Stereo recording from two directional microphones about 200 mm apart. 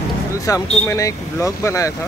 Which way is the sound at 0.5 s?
15° left (ahead or behind).